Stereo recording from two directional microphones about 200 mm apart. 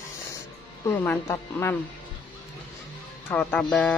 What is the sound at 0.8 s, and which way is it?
Speech, 10° left (ahead or behind).